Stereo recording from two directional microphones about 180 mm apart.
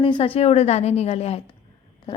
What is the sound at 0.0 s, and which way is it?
A woman's voice, 30° left (ahead or behind).